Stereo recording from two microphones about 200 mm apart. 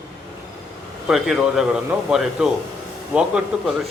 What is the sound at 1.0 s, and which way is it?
A man's voice, centre (ahead or behind).